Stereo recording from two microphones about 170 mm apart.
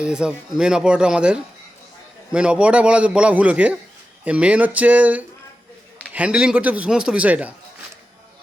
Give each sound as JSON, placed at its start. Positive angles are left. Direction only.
{"t": 0.0, "sound": "a man's voice", "side_deg": -5}